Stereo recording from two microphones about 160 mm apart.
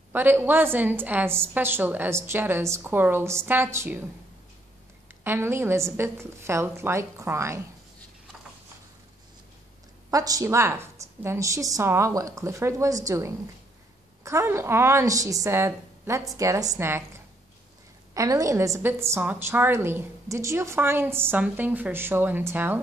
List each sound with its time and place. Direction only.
0.1 s a woman's voice: 10° right (ahead or behind)
5.2 s a woman's voice: 15° right (ahead or behind)
10.1 s a woman's voice: 20° right (ahead or behind)
18.1 s a woman's voice: 20° right (ahead or behind)